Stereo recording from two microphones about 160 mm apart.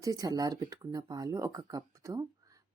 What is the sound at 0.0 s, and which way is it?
Speech, 20° right (ahead or behind).